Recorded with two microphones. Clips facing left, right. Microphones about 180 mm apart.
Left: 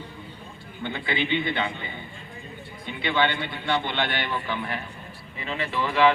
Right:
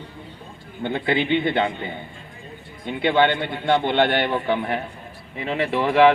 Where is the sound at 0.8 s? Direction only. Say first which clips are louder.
Right 6 dB; 55° right (ahead or behind).